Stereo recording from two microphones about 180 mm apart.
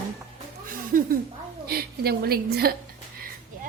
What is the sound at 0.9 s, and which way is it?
A woman's voice, 50° right (ahead or behind).